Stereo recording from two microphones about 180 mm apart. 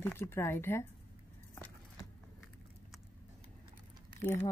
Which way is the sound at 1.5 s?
15° left (ahead or behind).